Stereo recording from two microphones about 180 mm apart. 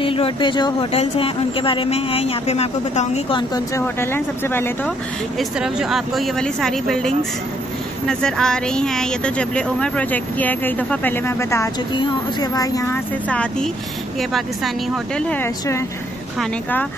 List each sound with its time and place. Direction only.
0.0 s speech: 30° left (ahead or behind); by 4.9 s 10° left (ahead or behind)
5.4 s a woman's voice: centre (ahead or behind); by 13.0 s 20° left (ahead or behind)
13.3 s a woman's voice: 5° left (ahead or behind)
15.1 s a woman's voice: 10° left (ahead or behind)